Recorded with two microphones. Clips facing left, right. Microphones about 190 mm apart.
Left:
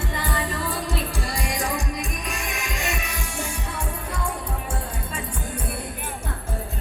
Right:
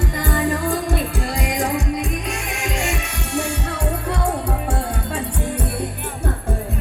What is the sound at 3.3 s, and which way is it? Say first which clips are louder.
Music: right 10 dB; 70° right (ahead or behind).